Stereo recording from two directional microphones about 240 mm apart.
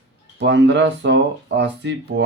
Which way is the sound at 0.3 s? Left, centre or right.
Right.